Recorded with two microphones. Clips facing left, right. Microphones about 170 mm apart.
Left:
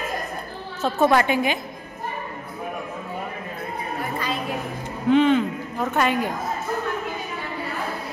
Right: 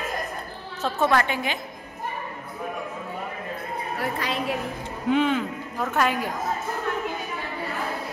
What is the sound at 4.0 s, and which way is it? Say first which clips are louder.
Speech: right 1 dB; 85° right.